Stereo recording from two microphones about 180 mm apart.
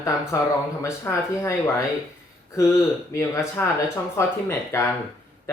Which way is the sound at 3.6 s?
10° left (ahead or behind).